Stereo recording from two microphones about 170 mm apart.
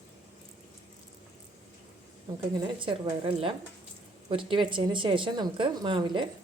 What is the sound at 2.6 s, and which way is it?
A woman's voice, 30° right (ahead or behind).